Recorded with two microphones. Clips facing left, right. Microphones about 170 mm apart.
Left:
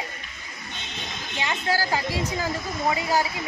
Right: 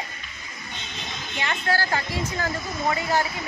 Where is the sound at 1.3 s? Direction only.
15° left (ahead or behind).